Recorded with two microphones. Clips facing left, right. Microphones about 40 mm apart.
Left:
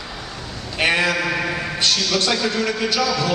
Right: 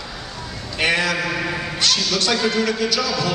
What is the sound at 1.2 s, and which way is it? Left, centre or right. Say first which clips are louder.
Mantra: left 1 dB; centre.